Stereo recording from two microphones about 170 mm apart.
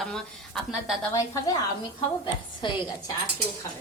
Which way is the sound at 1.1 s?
20° left (ahead or behind).